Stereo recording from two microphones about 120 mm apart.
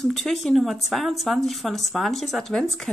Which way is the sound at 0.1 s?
Centre (ahead or behind).